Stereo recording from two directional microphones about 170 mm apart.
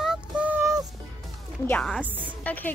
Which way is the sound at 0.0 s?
5° right (ahead or behind).